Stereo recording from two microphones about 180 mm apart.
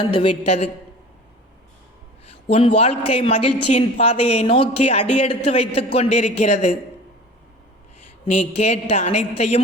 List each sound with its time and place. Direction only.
0.0 s a woman's voice: 30° left (ahead or behind)
2.5 s a woman's voice: 30° left (ahead or behind)
8.3 s a woman's voice: 35° left (ahead or behind)